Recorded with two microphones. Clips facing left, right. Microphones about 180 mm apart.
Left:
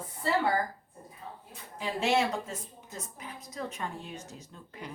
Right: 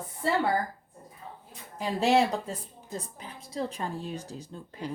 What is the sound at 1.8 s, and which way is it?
A woman's voice, 35° right (ahead or behind).